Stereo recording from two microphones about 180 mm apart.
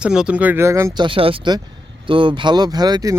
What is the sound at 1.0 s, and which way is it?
Speech, 30° right (ahead or behind).